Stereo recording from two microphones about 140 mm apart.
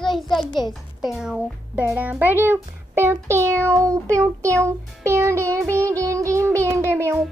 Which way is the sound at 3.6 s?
20° right (ahead or behind).